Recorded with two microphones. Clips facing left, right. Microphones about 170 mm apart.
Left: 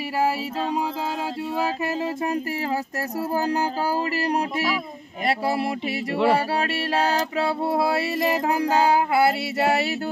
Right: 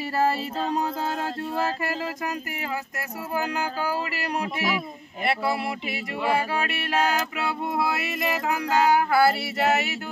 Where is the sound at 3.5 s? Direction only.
35° left (ahead or behind).